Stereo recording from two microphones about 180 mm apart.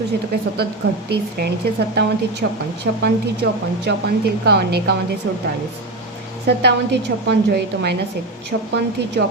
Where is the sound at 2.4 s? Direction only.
60° right (ahead or behind).